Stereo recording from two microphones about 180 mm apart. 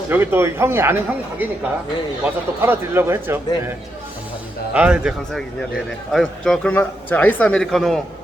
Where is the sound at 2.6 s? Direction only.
15° right (ahead or behind).